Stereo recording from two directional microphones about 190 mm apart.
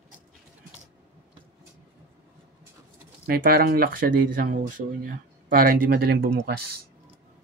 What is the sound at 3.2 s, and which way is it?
Speech, 55° right (ahead or behind).